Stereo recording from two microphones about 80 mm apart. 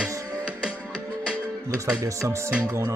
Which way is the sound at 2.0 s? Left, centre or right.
Right.